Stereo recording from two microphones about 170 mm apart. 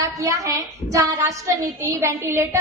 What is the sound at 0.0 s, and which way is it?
A woman's voice, 20° right (ahead or behind).